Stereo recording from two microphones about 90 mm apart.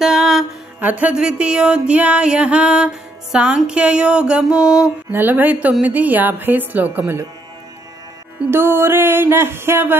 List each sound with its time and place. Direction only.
0.0 s music: 5° right (ahead or behind)
0.7 s music: 15° right (ahead or behind)
5.1 s a woman's voice: 20° right (ahead or behind)
8.5 s a woman's voice: 25° right (ahead or behind)